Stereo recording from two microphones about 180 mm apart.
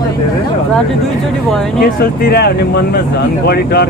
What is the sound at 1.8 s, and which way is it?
Speech, 60° left (ahead or behind).